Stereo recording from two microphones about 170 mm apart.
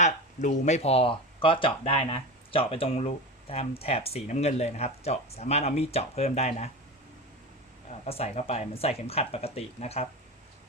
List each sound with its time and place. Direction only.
0.0 s speech: 45° left (ahead or behind)
8.0 s speech: 35° left (ahead or behind)